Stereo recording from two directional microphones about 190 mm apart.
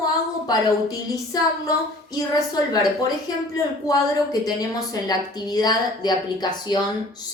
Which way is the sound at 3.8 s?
20° left (ahead or behind).